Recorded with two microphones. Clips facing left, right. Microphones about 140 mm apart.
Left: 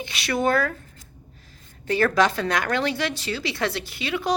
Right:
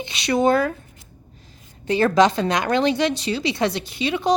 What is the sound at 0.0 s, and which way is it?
Speech, 20° right (ahead or behind).